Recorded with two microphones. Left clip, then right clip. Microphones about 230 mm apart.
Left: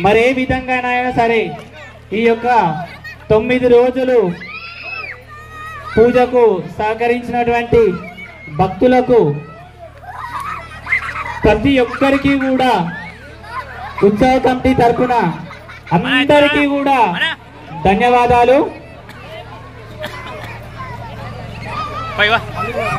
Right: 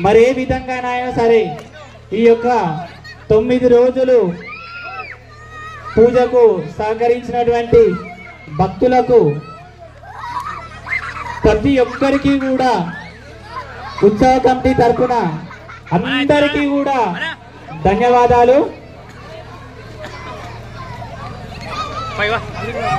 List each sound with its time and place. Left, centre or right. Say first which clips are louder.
0.0 s a man's voice: right 1 dB; left
5.7 s a man's voice: even; left
10.5 s fowl: left 4 dB; left
13.9 s a man's voice: right 1 dB; left
16.0 s a man's voice: left 3 dB; left
17.8 s a man's voice: even; left
22.1 s speech: left 5 dB; left